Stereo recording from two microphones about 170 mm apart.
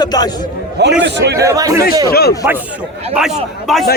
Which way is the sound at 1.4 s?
20° right (ahead or behind).